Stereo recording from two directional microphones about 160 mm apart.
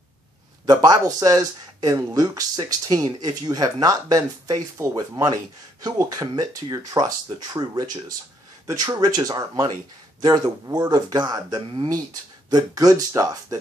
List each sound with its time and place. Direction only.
0.7 s speech: 25° right (ahead or behind)